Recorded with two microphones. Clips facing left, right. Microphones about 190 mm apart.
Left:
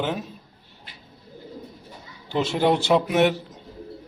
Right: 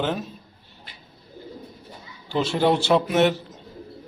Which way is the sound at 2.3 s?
20° left (ahead or behind).